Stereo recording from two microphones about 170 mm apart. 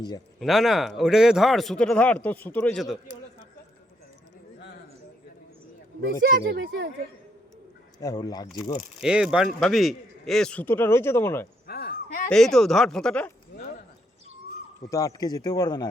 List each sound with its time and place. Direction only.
0.3 s a man's voice: centre (ahead or behind)
6.2 s speech: 65° right (ahead or behind)
7.9 s speech: 20° left (ahead or behind)
9.0 s a man's voice: 5° right (ahead or behind); by 11.4 s 15° left (ahead or behind)
11.6 s a sound: 65° left (ahead or behind)
12.3 s a man's voice: 5° left (ahead or behind)
13.5 s clip-clop: 75° left (ahead or behind)
14.8 s speech: 20° left (ahead or behind)